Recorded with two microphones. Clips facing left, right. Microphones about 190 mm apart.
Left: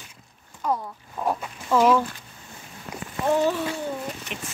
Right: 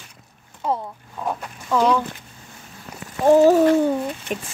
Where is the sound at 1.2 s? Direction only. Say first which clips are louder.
Left 1 dB; 5° left (ahead or behind).